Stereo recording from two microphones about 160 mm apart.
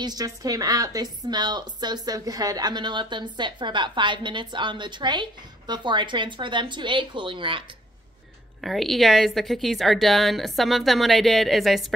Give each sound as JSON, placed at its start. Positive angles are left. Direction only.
{"t": 0.0, "sound": "a woman's voice", "side_deg": -25}
{"t": 8.5, "sound": "a woman's voice", "side_deg": 0}